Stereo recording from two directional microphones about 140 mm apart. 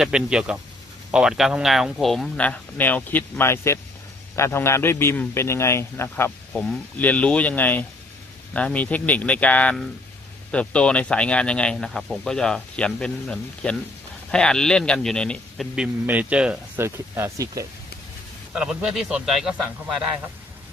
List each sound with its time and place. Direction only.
0.0 s a man's voice: 5° right (ahead or behind)
16.8 s speech: 20° right (ahead or behind)
18.5 s a man's voice: 5° right (ahead or behind)